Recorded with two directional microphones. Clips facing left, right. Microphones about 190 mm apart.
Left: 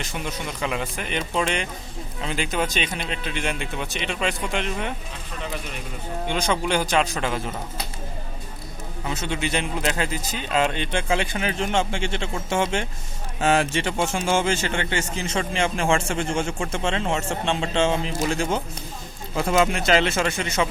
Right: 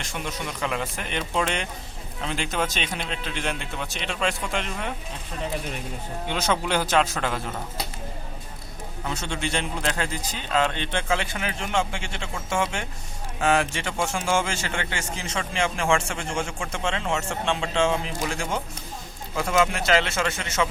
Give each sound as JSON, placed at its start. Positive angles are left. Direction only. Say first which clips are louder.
{"t": 0.0, "sound": "speech", "louder": "left 2 dB", "side_deg": 0}
{"t": 6.2, "sound": "speech", "louder": "left 1 dB", "side_deg": -5}
{"t": 9.0, "sound": "a man's voice", "louder": "left 2 dB", "side_deg": 5}
{"t": 19.4, "sound": "a man's voice", "louder": "left 2 dB", "side_deg": 25}